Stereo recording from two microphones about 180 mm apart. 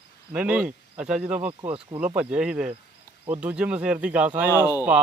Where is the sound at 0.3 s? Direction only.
5° right (ahead or behind).